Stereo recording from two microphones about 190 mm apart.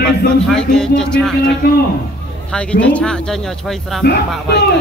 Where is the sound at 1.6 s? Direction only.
55° left (ahead or behind).